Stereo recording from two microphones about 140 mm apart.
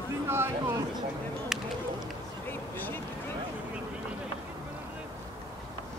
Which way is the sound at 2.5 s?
15° left (ahead or behind).